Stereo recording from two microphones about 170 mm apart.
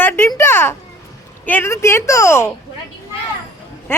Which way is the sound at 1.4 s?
10° left (ahead or behind).